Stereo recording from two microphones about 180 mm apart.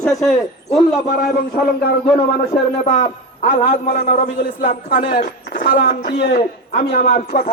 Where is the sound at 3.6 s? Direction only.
55° left (ahead or behind).